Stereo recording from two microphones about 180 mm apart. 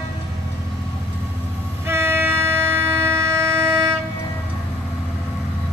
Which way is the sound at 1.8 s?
15° right (ahead or behind).